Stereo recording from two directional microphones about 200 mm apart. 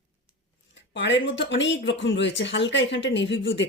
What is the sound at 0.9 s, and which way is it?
Speech, 65° left (ahead or behind).